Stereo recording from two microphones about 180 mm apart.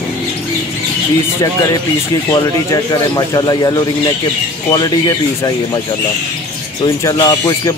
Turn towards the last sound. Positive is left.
turn(degrees=20)  # may be behind; listen again after turning